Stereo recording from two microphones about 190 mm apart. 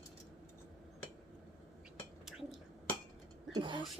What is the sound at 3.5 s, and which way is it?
Speech, 25° right (ahead or behind).